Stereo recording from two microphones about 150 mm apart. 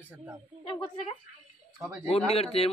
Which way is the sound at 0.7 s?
35° left (ahead or behind).